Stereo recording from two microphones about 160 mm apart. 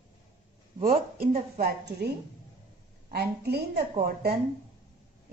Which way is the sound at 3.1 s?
90° right.